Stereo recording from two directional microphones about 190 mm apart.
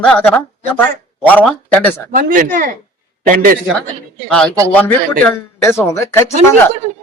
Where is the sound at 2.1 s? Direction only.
45° right (ahead or behind).